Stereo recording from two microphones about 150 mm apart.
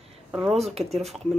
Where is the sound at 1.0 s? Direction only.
Centre (ahead or behind).